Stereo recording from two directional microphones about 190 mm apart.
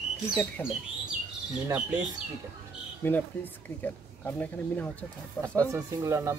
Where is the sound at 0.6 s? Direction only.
10° left (ahead or behind).